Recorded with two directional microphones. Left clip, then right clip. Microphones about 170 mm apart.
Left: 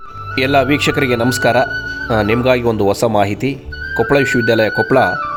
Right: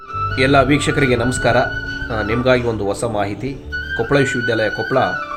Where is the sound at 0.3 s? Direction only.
55° left (ahead or behind).